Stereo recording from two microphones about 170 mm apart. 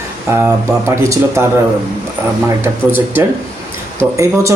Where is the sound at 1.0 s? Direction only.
15° right (ahead or behind).